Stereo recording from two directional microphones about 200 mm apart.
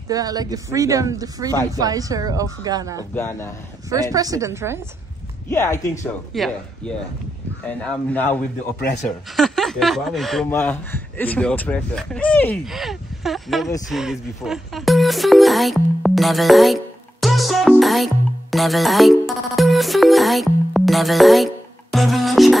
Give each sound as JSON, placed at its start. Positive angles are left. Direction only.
{"t": 0.1, "sound": "speech", "side_deg": -20}
{"t": 3.2, "sound": "speech", "side_deg": 10}
{"t": 3.9, "sound": "speech", "side_deg": -15}
{"t": 5.5, "sound": "speech", "side_deg": 10}
{"t": 21.9, "sound": "music", "side_deg": 0}